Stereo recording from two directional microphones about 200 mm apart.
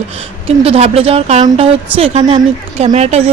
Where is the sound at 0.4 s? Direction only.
30° right (ahead or behind).